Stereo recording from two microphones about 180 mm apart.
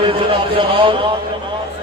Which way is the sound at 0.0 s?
30° right (ahead or behind).